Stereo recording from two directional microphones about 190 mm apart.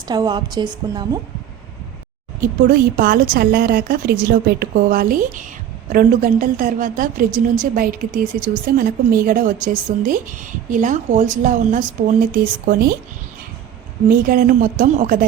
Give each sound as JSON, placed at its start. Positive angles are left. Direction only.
{"t": 0.1, "sound": "a woman's voice", "side_deg": -20}
{"t": 2.4, "sound": "a woman's voice", "side_deg": -45}
{"t": 14.1, "sound": "a woman's voice", "side_deg": -50}